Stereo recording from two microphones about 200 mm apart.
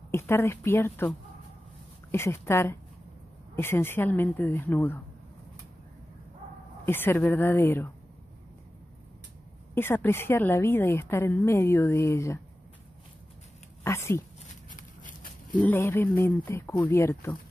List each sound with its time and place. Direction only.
0.1 s a woman's voice: 10° left (ahead or behind)
6.9 s a woman's voice: 10° left (ahead or behind)
9.8 s a woman's voice: 10° left (ahead or behind)
13.8 s a woman's voice: 15° left (ahead or behind)
14.7 s a sound: 40° left (ahead or behind)
15.5 s a woman's voice: 10° left (ahead or behind)